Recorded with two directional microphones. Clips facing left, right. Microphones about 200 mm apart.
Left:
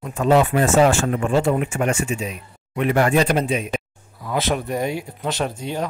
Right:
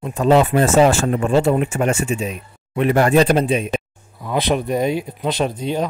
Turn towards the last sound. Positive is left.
turn(degrees=-20)  # may be behind; listen again after turning